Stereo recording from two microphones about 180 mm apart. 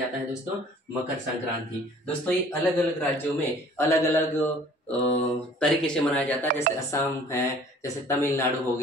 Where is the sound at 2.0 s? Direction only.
10° left (ahead or behind).